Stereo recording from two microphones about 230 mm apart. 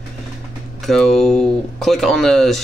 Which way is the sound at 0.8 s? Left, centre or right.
Centre.